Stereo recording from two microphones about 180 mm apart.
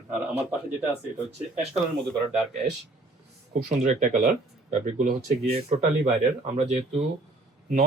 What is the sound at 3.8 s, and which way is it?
Speech, 40° right (ahead or behind).